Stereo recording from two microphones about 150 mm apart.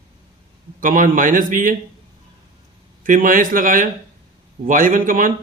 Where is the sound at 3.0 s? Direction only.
65° right (ahead or behind).